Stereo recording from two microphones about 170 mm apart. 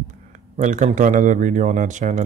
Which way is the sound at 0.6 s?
45° right (ahead or behind).